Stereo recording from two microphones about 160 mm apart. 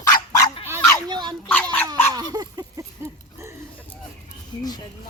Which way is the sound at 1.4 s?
10° left (ahead or behind).